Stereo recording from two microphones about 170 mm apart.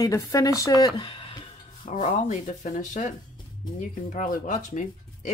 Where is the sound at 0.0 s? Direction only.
20° left (ahead or behind).